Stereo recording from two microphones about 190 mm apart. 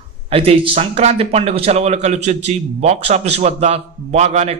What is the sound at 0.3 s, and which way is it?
A man's voice, 30° right (ahead or behind).